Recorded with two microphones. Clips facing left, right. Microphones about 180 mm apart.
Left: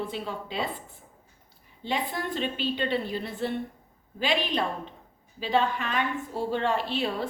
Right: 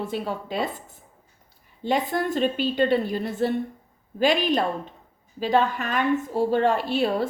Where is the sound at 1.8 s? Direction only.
45° right (ahead or behind).